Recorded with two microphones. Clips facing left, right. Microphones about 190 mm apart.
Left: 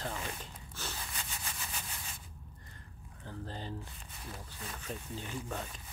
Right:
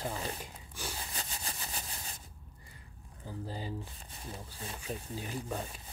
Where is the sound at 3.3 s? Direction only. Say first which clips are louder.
Right 2 dB; 10° right (ahead or behind).